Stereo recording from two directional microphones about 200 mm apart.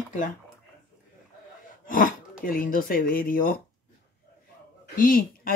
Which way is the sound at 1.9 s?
45° left (ahead or behind).